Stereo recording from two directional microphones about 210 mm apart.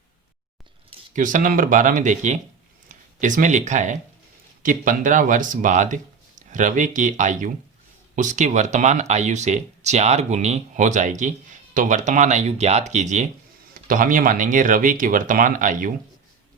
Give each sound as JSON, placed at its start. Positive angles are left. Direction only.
{"t": 1.1, "sound": "speech", "side_deg": -40}